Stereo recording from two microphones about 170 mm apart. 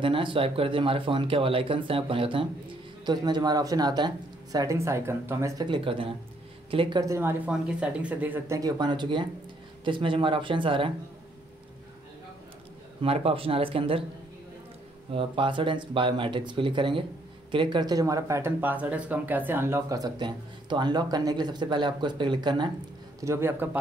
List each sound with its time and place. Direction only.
0.0 s speech: 30° right (ahead or behind)
5.7 s speech: 30° right (ahead or behind)
13.0 s speech: 35° right (ahead or behind)
15.1 s speech: 30° right (ahead or behind)
23.2 s a man's voice: 15° right (ahead or behind)